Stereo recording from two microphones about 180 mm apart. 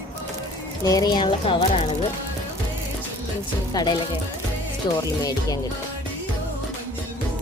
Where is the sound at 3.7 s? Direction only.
20° left (ahead or behind).